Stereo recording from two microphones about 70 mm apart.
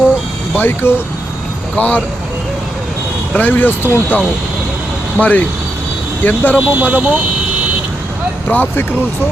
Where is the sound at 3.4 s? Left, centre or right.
Left.